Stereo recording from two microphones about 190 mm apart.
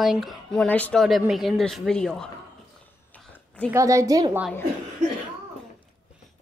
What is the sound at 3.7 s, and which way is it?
Speech, 15° right (ahead or behind).